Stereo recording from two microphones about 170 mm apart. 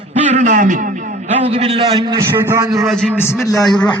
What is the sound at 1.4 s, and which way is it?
Speech, 35° right (ahead or behind).